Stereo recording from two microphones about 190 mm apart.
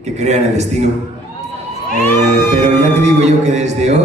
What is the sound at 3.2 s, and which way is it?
Speech, 35° right (ahead or behind).